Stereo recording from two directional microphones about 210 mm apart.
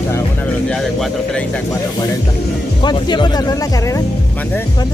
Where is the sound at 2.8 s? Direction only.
20° left (ahead or behind).